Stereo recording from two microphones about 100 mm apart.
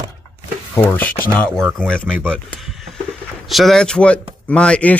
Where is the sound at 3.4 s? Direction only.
Centre (ahead or behind).